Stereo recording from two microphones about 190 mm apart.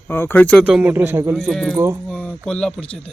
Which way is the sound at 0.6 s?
5° right (ahead or behind).